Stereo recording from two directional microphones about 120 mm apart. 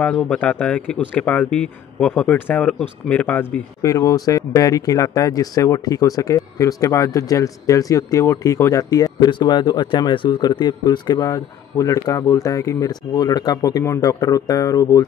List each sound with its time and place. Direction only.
0.0 s speech: 10° left (ahead or behind)
3.8 s speech: 30° left (ahead or behind)